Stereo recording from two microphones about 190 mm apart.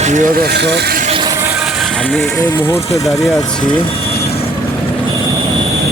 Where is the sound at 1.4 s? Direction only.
10° right (ahead or behind).